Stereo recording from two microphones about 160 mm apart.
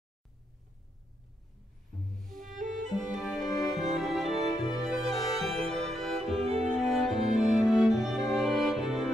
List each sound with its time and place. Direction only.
2.1 s music: centre (ahead or behind)
6.4 s music: 40° right (ahead or behind)
6.7 s music: centre (ahead or behind)